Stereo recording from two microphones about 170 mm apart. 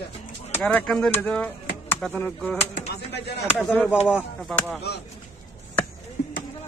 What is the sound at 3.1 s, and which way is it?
Speech, 80° left.